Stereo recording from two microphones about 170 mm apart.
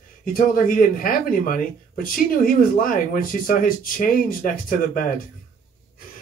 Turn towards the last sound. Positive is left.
turn(degrees=55)  # may be behind; listen again after turning